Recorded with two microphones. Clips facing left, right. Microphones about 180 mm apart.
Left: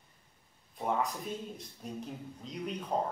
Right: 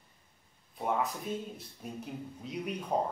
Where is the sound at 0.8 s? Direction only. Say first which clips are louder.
Even; 5° right (ahead or behind).